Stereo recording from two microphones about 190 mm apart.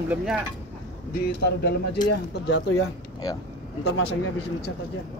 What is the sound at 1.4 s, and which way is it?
Speech, 55° left (ahead or behind).